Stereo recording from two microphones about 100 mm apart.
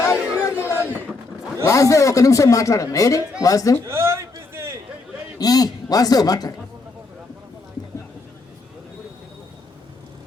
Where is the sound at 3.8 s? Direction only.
25° right (ahead or behind).